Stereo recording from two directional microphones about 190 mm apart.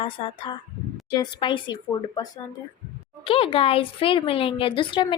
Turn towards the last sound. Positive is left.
turn(degrees=25)  # may be behind; listen again after turning